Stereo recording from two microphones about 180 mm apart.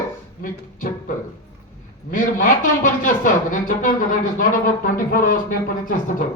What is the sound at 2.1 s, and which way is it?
A man's voice, 50° left (ahead or behind).